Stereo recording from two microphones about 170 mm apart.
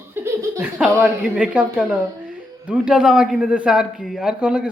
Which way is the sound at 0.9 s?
5° right (ahead or behind).